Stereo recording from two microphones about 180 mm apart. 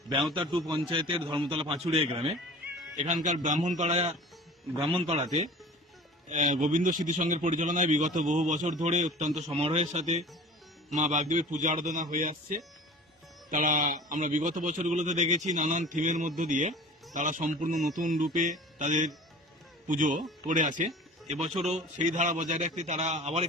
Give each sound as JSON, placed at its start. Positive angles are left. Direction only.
{"t": 0.9, "sound": "a man's voice", "side_deg": -30}
{"t": 3.0, "sound": "a man's voice", "side_deg": -40}
{"t": 6.3, "sound": "a man's voice", "side_deg": -40}